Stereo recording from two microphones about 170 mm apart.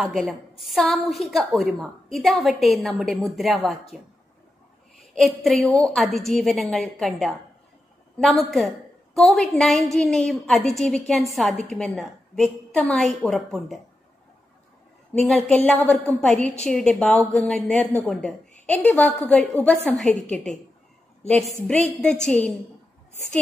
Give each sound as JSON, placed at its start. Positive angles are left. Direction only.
{"t": 0.0, "sound": "a woman's voice", "side_deg": 0}
{"t": 5.1, "sound": "a woman's voice", "side_deg": 0}
{"t": 15.1, "sound": "a woman's voice", "side_deg": 0}
{"t": 22.0, "sound": "a woman's voice", "side_deg": 5}